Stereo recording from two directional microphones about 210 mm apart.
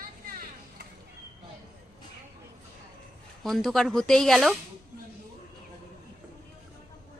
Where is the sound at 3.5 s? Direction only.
Centre (ahead or behind).